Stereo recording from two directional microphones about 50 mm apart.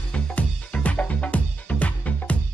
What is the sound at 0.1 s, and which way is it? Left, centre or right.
Music, left.